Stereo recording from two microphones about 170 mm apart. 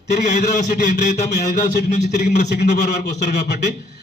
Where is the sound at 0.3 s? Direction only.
40° left (ahead or behind).